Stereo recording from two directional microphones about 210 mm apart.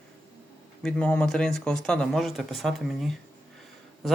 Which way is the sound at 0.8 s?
5° left (ahead or behind).